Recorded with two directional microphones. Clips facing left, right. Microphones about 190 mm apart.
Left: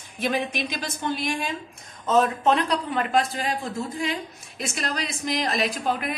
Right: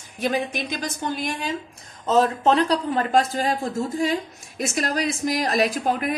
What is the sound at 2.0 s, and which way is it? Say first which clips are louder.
A man's voice: right 2 dB; 35° right (ahead or behind).